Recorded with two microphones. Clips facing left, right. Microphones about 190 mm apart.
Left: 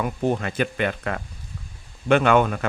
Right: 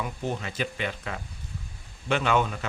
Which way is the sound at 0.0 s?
55° left (ahead or behind).